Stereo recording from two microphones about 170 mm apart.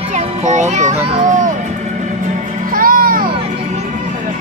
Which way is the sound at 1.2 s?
50° right (ahead or behind).